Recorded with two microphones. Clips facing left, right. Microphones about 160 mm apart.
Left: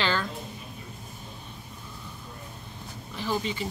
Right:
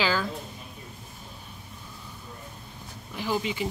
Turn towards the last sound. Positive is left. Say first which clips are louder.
# right 1 dB
turn(degrees=-15)  # may be behind; listen again after turning